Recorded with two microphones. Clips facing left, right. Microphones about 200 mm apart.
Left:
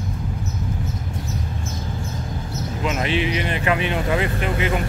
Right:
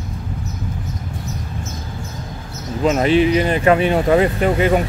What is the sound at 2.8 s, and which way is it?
Speech, 40° right (ahead or behind).